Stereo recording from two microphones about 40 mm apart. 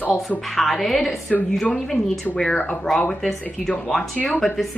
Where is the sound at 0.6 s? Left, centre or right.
Centre.